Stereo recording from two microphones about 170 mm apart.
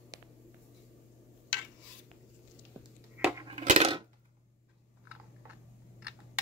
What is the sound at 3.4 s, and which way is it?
Coin, 40° right (ahead or behind).